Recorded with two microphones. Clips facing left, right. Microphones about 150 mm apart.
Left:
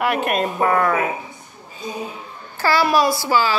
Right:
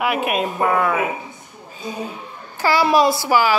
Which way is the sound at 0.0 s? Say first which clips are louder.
Even; 5° right (ahead or behind).